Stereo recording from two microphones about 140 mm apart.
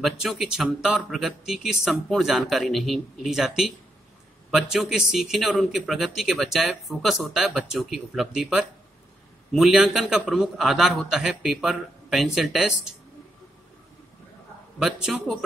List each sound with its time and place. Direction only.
0.0 s a man's voice: centre (ahead or behind)
14.8 s a man's voice: 5° right (ahead or behind)